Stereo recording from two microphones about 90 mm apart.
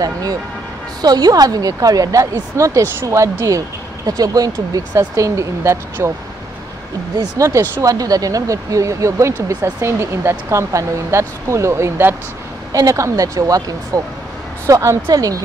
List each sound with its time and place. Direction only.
0.0 s a woman's voice: 45° right (ahead or behind)
7.2 s speech: 35° right (ahead or behind)
12.7 s speech: 35° right (ahead or behind)